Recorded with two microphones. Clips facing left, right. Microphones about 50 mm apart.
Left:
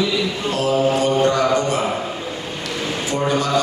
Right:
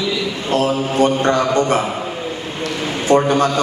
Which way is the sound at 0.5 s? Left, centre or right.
Right.